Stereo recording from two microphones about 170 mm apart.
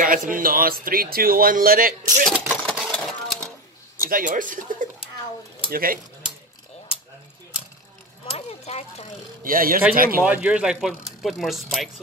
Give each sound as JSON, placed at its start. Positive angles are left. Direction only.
{"t": 0.0, "sound": "speech", "side_deg": -55}
{"t": 2.6, "sound": "sewing machine", "side_deg": 0}
{"t": 3.9, "sound": "speech", "side_deg": -55}
{"t": 8.3, "sound": "speech", "side_deg": 40}
{"t": 9.4, "sound": "speech", "side_deg": -55}
{"t": 10.2, "sound": "speech", "side_deg": -10}